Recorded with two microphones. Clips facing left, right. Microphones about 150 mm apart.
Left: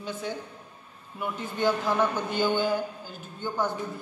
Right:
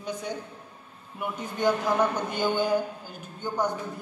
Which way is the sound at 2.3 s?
15° right (ahead or behind).